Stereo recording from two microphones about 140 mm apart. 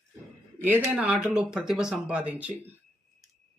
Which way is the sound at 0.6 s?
15° right (ahead or behind).